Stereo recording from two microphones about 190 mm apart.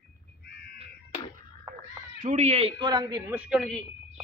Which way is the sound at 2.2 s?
35° right (ahead or behind).